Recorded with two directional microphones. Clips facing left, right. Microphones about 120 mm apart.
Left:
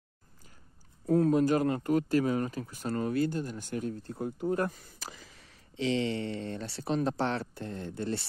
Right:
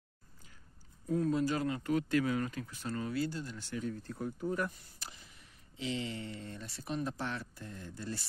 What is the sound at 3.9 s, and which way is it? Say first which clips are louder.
Speech: left 4 dB; 35° left (ahead or behind).